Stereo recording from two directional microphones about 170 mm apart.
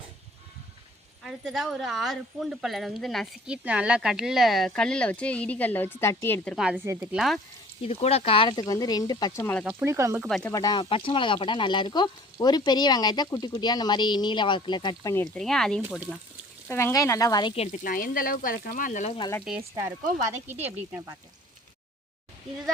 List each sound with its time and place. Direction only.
1.2 s speech: centre (ahead or behind)
6.8 s speech: 10° right (ahead or behind)
7.9 s speech: 35° left (ahead or behind); by 9.6 s 15° left (ahead or behind)
9.8 s speech: 15° right (ahead or behind)
10.2 s speech: centre (ahead or behind)
10.5 s speech: 25° left (ahead or behind)
15.4 s speech: 5° left (ahead or behind); by 17.7 s 30° left (ahead or behind)
17.7 s speech: 55° left (ahead or behind)
20.3 s speech: 10° right (ahead or behind)